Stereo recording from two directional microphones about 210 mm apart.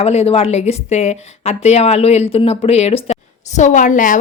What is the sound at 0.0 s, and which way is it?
Speech, 30° left (ahead or behind).